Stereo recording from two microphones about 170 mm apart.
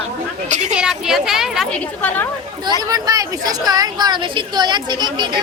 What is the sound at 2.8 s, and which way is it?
A woman's voice, 20° right (ahead or behind).